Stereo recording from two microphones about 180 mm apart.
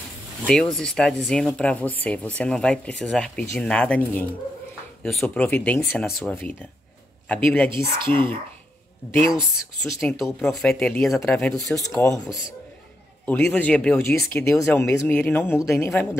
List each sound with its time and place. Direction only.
0.5 s speech: centre (ahead or behind)
9.8 s speech: centre (ahead or behind)
11.6 s speech: 20° left (ahead or behind)
13.2 s speech: 10° left (ahead or behind)